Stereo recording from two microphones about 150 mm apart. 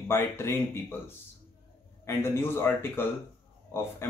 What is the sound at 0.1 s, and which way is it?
Speech, 15° left (ahead or behind).